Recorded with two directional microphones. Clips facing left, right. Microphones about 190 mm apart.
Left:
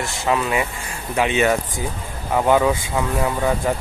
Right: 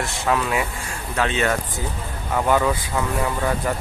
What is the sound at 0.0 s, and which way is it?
Speech, centre (ahead or behind).